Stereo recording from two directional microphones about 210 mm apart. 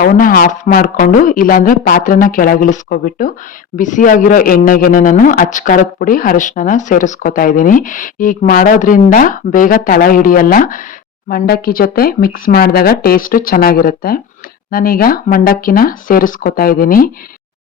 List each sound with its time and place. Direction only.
0.0 s a man's voice: 40° left (ahead or behind)